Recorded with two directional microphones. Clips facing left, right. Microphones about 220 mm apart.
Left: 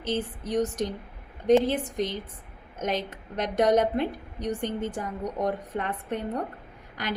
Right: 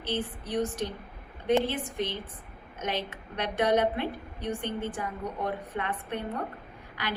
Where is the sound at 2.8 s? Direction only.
45° left (ahead or behind).